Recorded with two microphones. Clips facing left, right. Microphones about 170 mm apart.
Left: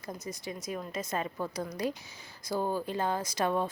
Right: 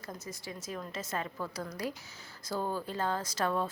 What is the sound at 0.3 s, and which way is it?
A woman's voice, 20° left (ahead or behind).